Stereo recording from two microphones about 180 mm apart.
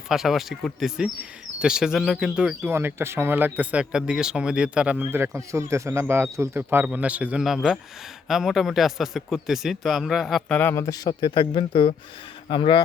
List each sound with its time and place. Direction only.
0.1 s speech: centre (ahead or behind); by 12.8 s 25° left (ahead or behind)